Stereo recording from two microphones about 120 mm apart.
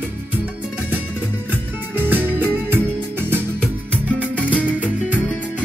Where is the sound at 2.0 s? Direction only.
15° right (ahead or behind).